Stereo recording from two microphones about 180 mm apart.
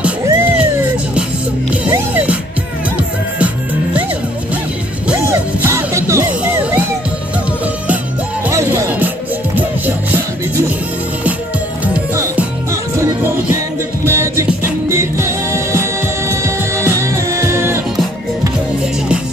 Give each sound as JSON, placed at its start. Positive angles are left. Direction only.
{"t": 0.2, "sound": "a sound", "side_deg": -10}
{"t": 1.7, "sound": "music", "side_deg": -10}
{"t": 5.0, "sound": "music", "side_deg": -10}
{"t": 8.5, "sound": "music", "side_deg": -15}
{"t": 11.8, "sound": "music", "side_deg": -10}